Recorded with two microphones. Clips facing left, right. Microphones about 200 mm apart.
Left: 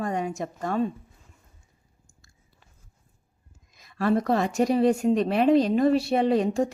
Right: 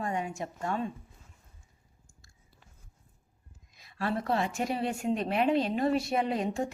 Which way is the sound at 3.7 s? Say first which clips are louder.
Left 9 dB; 45° left (ahead or behind).